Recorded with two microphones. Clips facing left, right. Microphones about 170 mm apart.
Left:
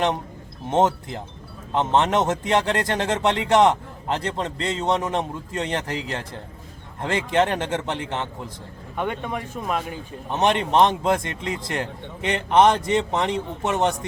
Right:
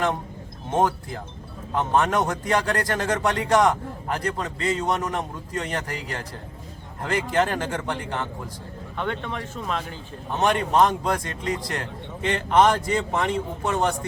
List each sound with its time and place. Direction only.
0.7 s a man's voice: 20° left (ahead or behind)
9.0 s a man's voice: 10° left (ahead or behind)